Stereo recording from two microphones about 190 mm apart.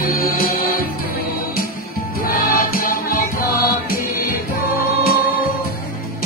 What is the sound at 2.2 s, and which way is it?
Music, 50° left (ahead or behind).